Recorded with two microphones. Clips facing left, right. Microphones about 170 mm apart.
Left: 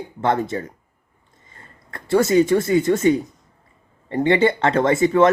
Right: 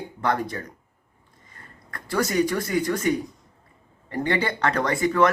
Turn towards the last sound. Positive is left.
turn(degrees=25)  # may be behind; listen again after turning